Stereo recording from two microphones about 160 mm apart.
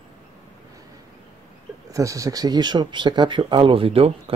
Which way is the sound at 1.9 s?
20° right (ahead or behind).